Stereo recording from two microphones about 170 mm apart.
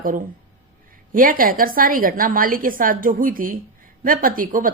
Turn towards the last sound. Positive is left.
turn(degrees=-55)  # may be behind; listen again after turning